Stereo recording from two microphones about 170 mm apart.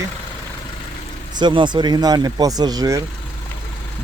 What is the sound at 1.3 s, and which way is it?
Speech, 25° right (ahead or behind).